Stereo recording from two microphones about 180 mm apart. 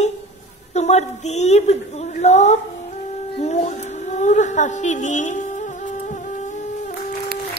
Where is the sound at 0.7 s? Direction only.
40° left (ahead or behind).